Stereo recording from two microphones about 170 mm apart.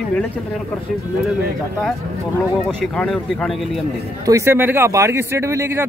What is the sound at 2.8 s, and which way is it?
Speech, 5° left (ahead or behind).